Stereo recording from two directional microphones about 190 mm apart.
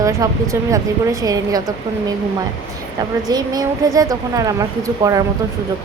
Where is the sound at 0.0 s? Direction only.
15° right (ahead or behind).